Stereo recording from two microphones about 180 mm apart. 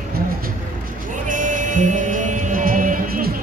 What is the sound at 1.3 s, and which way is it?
Music, 45° right (ahead or behind).